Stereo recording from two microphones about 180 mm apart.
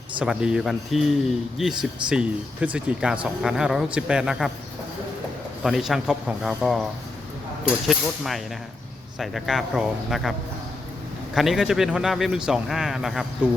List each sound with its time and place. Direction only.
0.2 s a man's voice: 5° right (ahead or behind)
5.6 s a man's voice: centre (ahead or behind)
7.9 s a man's voice: centre (ahead or behind)
11.3 s a man's voice: centre (ahead or behind)